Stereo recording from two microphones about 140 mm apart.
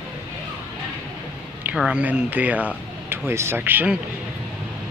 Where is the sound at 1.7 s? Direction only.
5° right (ahead or behind).